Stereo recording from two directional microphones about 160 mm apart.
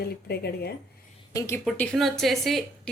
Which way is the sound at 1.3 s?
20° left (ahead or behind).